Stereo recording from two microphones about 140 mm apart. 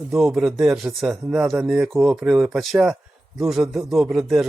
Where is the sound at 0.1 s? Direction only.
5° right (ahead or behind).